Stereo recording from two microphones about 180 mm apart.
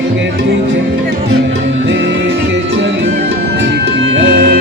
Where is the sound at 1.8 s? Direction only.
90° right.